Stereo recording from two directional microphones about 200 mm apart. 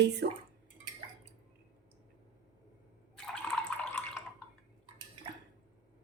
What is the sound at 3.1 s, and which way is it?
Drip, 5° left (ahead or behind).